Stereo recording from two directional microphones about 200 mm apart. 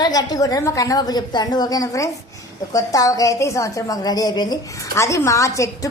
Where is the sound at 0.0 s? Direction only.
20° left (ahead or behind).